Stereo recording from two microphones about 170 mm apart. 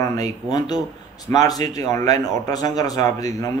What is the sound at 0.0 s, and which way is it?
A man's voice, 20° left (ahead or behind).